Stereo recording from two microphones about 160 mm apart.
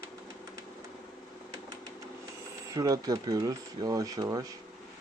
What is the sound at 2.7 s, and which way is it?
Speech, 20° right (ahead or behind).